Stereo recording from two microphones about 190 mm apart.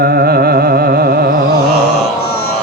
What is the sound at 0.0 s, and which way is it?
Music, 55° right (ahead or behind).